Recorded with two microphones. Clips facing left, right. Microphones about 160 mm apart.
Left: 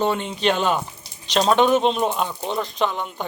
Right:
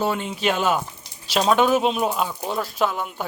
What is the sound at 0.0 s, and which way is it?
Speech, 5° right (ahead or behind).